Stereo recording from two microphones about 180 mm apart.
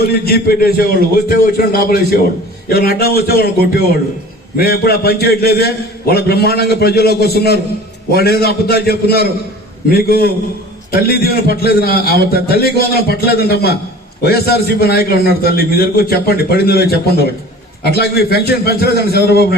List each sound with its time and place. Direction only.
0.1 s a man's voice: 60° left (ahead or behind)